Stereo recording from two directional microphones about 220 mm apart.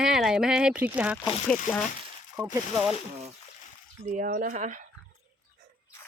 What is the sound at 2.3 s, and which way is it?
Speech, 5° right (ahead or behind).